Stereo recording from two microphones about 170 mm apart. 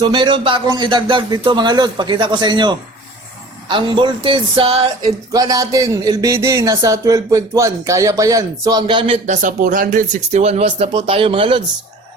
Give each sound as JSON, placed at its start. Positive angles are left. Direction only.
{"t": 0.0, "sound": "speech", "side_deg": -30}
{"t": 9.2, "sound": "speech", "side_deg": -45}